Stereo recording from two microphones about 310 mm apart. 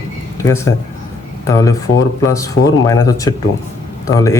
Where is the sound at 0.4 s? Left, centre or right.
Centre.